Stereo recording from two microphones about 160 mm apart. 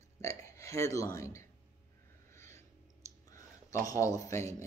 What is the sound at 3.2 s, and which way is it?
Speech, 20° left (ahead or behind).